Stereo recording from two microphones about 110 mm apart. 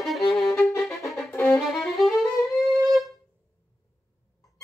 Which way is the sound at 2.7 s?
Centre (ahead or behind).